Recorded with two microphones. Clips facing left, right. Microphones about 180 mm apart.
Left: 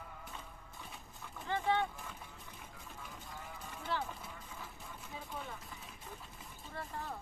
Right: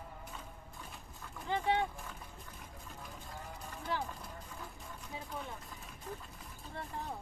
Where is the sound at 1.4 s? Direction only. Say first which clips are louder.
Right 1 dB; 15° right (ahead or behind).